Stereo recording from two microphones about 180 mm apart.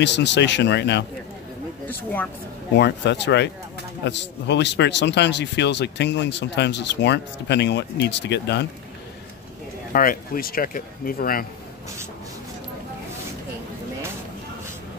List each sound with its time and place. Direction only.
0.0 s speech: 75° left (ahead or behind)
2.7 s speech: 75° left (ahead or behind)
9.9 s speech: 55° left (ahead or behind)